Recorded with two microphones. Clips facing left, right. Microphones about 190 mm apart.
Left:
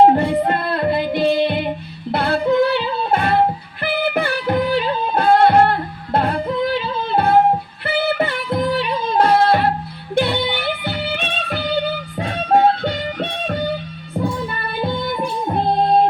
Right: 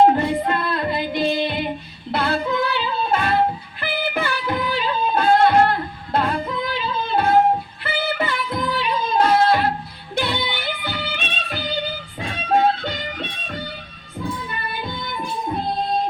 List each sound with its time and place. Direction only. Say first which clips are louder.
0.0 s yodeling: left 3 dB; 30° left (ahead or behind)
0.3 s music: left 3 dB; 60° left (ahead or behind)